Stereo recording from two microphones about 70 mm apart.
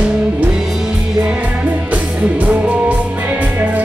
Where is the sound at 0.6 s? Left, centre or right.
Centre.